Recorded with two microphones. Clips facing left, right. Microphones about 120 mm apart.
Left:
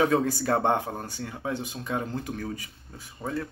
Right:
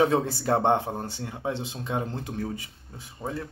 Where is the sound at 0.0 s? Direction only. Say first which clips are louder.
Even; 25° right (ahead or behind).